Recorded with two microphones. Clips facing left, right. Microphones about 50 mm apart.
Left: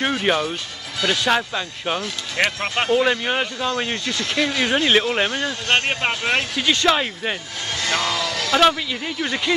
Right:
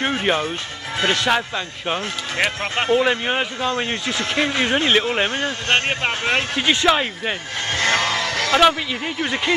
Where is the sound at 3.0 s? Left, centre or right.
Centre.